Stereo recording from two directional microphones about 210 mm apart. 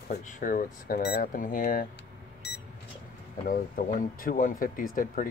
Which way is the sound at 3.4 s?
40° left (ahead or behind).